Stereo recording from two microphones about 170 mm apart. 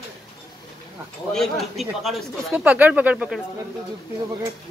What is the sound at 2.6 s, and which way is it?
Speech, 10° right (ahead or behind).